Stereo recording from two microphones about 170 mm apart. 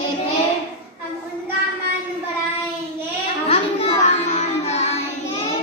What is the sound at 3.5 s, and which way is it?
Music, 35° left (ahead or behind).